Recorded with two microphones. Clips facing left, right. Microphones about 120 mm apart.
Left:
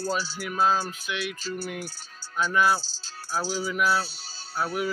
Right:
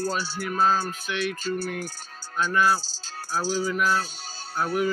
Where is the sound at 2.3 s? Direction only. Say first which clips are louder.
Right 1 dB; 10° left (ahead or behind).